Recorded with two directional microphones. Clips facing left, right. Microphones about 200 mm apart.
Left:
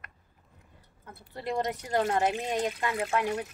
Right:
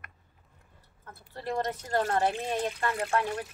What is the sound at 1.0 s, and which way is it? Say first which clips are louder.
Speech: left 1 dB; 15° left (ahead or behind).